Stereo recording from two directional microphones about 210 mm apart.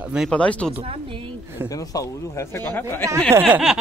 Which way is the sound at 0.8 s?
25° right (ahead or behind).